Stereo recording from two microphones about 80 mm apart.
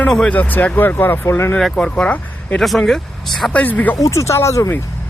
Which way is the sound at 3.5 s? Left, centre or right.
Centre.